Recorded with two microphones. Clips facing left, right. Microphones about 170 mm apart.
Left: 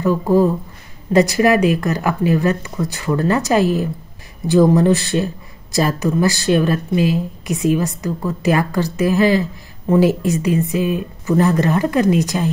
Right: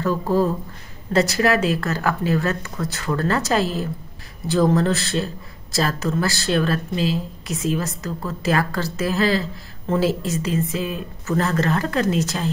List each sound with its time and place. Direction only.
0.0 s speech: 15° left (ahead or behind)